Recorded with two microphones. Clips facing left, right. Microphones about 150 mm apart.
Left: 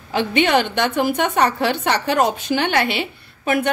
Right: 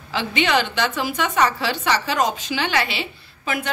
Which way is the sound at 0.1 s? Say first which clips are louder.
Left 4 dB; 50° left (ahead or behind).